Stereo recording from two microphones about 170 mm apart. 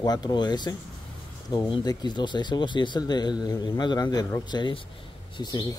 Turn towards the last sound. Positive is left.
turn(degrees=25)  # may be behind; listen again after turning